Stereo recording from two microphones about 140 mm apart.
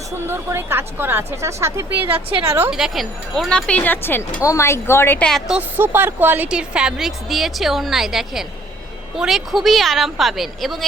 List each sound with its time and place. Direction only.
0.3 s speech: 15° right (ahead or behind)
2.6 s a woman's voice: centre (ahead or behind); by 5.3 s 15° left (ahead or behind)
5.3 s speech: 5° right (ahead or behind)
5.7 s speech: 15° right (ahead or behind)